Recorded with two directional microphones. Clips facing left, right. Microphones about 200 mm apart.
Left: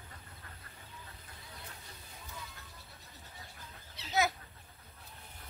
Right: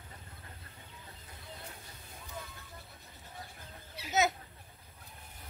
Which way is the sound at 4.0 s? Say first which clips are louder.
Right 5 dB; 10° right (ahead or behind).